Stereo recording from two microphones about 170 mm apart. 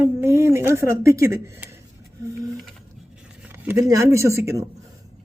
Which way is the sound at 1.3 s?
15° right (ahead or behind).